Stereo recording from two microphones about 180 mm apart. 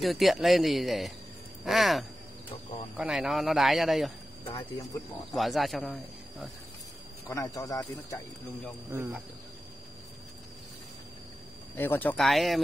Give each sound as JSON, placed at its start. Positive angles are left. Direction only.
{"t": 0.0, "sound": "speech", "side_deg": 0}
{"t": 1.6, "sound": "a sound", "side_deg": 0}
{"t": 3.0, "sound": "speech", "side_deg": 0}
{"t": 4.5, "sound": "speech", "side_deg": 20}
{"t": 5.3, "sound": "speech", "side_deg": 0}
{"t": 7.2, "sound": "speech", "side_deg": 15}
{"t": 8.9, "sound": "speech", "side_deg": -10}
{"t": 11.7, "sound": "speech", "side_deg": 10}